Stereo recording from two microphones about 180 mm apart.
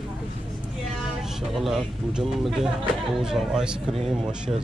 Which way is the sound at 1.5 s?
Centre (ahead or behind).